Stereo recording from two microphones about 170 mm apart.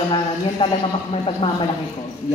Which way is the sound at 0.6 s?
30° left (ahead or behind).